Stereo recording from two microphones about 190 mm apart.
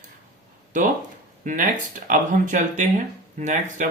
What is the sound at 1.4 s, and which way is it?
Speech, 45° right (ahead or behind).